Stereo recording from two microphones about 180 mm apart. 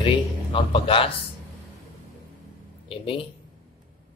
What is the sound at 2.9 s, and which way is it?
Speech, 30° left (ahead or behind).